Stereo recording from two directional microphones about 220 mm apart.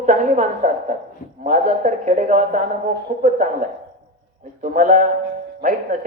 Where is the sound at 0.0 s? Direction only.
35° right (ahead or behind).